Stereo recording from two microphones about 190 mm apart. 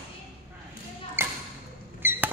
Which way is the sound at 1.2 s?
10° right (ahead or behind).